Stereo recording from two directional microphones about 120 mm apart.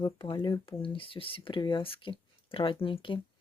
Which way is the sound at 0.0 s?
40° left (ahead or behind).